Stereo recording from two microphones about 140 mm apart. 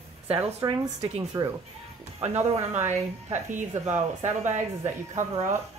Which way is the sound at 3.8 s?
55° right (ahead or behind).